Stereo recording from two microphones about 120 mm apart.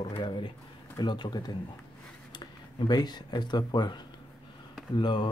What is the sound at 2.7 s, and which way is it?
A man's voice, 35° left (ahead or behind).